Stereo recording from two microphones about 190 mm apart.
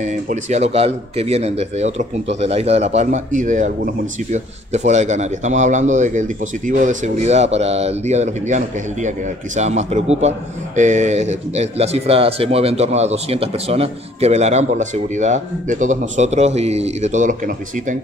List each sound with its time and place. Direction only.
0.0 s speech: 40° right (ahead or behind)